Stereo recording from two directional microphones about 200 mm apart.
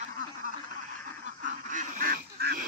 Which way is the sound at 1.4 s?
40° right (ahead or behind).